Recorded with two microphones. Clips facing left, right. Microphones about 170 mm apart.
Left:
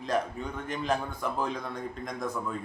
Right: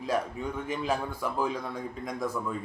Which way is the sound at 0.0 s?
5° right (ahead or behind).